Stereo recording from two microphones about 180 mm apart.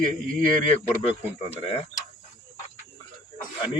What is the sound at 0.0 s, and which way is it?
Speech, 45° right (ahead or behind).